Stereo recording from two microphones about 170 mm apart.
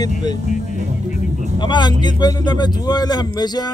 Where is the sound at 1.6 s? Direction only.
25° left (ahead or behind).